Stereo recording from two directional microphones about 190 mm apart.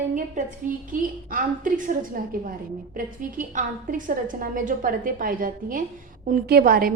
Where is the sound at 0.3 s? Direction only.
45° right (ahead or behind).